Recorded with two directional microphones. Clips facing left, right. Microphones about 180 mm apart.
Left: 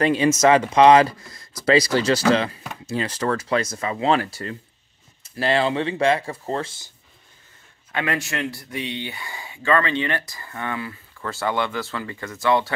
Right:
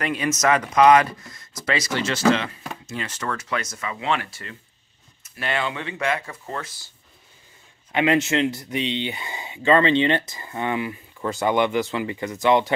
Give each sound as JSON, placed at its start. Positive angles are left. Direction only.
{"t": 0.0, "sound": "speech", "side_deg": 30}
{"t": 7.9, "sound": "speech", "side_deg": -20}